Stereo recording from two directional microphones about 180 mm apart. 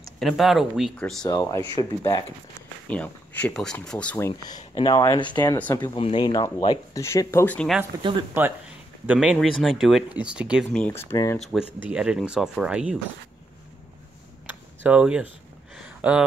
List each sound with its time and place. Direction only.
0.2 s speech: centre (ahead or behind)
1.2 s speech: 20° left (ahead or behind)
2.9 s speech: 10° left (ahead or behind)
4.3 s speech: 20° left (ahead or behind); by 7.8 s 5° left (ahead or behind)
8.4 s speech: 10° right (ahead or behind)
10.7 s speech: 10° left (ahead or behind)
11.8 s speech: 5° right (ahead or behind)
14.8 s speech: 5° right (ahead or behind)
15.7 s a sound: 5° right (ahead or behind)